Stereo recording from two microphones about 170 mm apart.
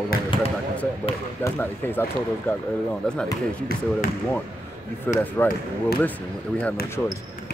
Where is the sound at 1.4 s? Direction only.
15° left (ahead or behind).